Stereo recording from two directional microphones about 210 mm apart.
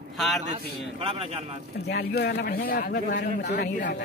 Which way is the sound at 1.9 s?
50° left (ahead or behind).